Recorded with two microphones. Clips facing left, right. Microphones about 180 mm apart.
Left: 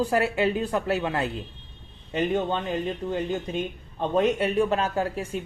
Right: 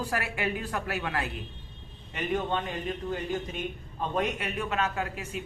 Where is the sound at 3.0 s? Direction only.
30° left (ahead or behind).